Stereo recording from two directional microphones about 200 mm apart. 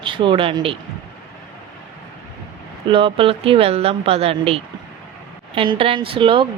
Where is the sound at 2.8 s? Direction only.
25° right (ahead or behind).